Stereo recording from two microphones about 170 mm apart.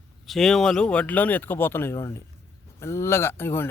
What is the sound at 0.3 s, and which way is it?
Speech, centre (ahead or behind).